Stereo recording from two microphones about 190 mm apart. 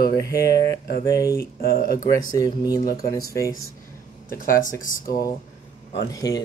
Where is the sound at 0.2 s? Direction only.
15° left (ahead or behind).